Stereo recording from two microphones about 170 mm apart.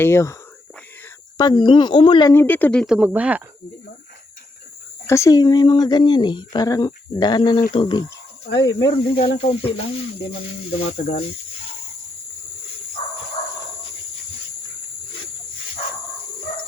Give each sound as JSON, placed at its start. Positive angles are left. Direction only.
{"t": 0.0, "sound": "speech", "side_deg": 15}
{"t": 1.4, "sound": "speech", "side_deg": 25}
{"t": 2.3, "sound": "speech", "side_deg": 10}
{"t": 2.8, "sound": "speech", "side_deg": -5}
{"t": 5.0, "sound": "speech", "side_deg": 15}
{"t": 8.4, "sound": "speech", "side_deg": 90}
{"t": 9.1, "sound": "a sound", "side_deg": 35}
{"t": 13.4, "sound": "dog", "side_deg": 45}